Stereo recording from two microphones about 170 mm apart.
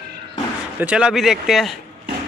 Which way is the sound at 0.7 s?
5° right (ahead or behind).